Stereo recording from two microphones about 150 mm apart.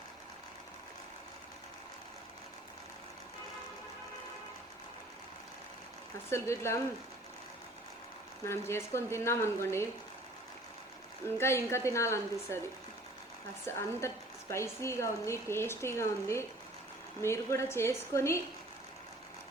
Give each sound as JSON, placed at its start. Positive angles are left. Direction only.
{"t": 6.3, "sound": "speech", "side_deg": 15}
{"t": 8.4, "sound": "speech", "side_deg": 15}
{"t": 11.3, "sound": "speech", "side_deg": 15}
{"t": 13.7, "sound": "speech", "side_deg": 15}